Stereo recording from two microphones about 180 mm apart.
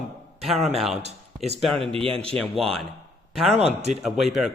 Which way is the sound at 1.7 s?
30° right (ahead or behind).